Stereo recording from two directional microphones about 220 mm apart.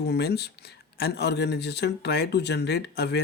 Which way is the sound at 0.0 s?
45° left (ahead or behind).